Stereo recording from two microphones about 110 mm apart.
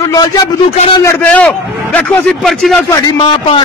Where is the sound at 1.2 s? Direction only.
15° left (ahead or behind).